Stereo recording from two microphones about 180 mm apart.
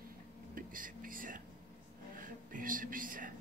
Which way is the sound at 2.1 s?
50° right (ahead or behind).